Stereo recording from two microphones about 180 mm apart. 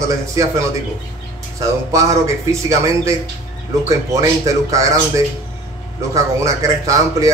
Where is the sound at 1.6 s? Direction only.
20° right (ahead or behind).